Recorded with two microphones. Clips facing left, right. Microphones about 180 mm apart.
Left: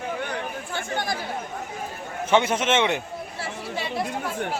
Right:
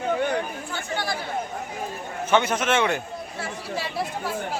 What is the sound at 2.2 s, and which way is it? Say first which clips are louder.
Speech: left 1 dB; 25° left (ahead or behind).